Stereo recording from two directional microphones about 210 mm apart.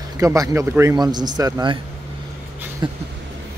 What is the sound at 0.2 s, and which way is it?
Speech, 15° right (ahead or behind).